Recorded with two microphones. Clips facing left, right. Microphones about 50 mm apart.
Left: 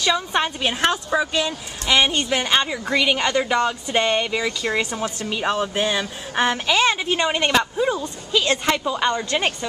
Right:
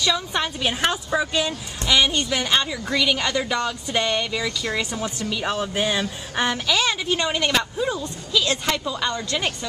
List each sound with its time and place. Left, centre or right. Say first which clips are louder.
0.0 s a woman's voice: left 3 dB; left
0.7 s speech: left 2 dB; centre
1.9 s a woman's voice: left 1 dB; left